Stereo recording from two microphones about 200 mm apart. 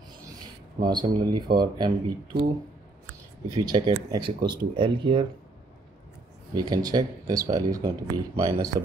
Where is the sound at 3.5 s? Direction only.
20° right (ahead or behind).